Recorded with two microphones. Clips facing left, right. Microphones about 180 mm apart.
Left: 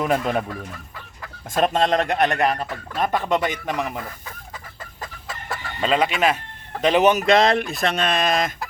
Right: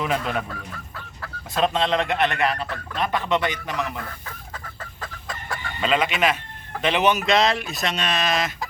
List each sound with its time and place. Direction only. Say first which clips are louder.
0.0 s speech: left 4 dB; 45° left (ahead or behind)
1.5 s speech: left 2 dB; 45° left (ahead or behind)
3.8 s speech: left 2 dB; 10° left (ahead or behind)
4.5 s chicken: right 1 dB; 10° left (ahead or behind)
5.8 s speech: left 2 dB; 35° left (ahead or behind)